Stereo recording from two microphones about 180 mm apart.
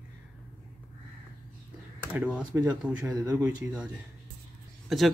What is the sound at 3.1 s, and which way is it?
Speech, 20° right (ahead or behind).